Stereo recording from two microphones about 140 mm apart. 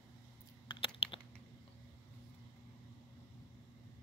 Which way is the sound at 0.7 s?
40° left (ahead or behind).